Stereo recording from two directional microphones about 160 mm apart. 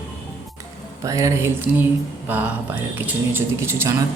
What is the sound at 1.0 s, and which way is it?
Speech, 20° right (ahead or behind).